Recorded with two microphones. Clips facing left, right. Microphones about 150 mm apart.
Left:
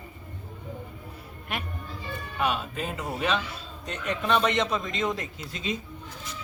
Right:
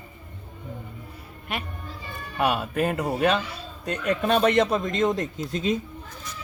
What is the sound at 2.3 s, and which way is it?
Speech, 55° right (ahead or behind).